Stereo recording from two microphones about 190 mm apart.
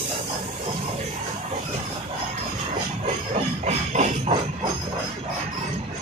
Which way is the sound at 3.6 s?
35° right (ahead or behind).